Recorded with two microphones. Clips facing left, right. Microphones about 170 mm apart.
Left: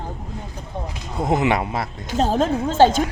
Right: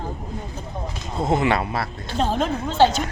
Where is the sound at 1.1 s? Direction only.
15° left (ahead or behind).